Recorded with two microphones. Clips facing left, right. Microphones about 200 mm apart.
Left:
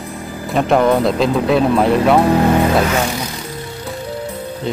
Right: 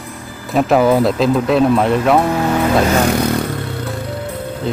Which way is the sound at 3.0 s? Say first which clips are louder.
Right 8 dB; 60° right (ahead or behind).